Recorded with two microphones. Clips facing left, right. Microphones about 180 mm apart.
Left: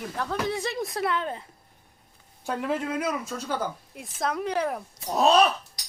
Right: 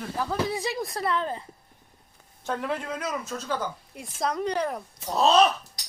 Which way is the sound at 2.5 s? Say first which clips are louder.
Left 2 dB; 5° left (ahead or behind).